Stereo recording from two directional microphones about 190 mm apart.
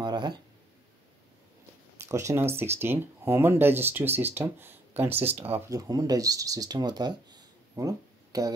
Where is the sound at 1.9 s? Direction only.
15° right (ahead or behind).